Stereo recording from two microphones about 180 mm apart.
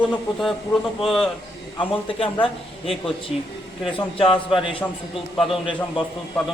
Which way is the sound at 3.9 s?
30° left (ahead or behind).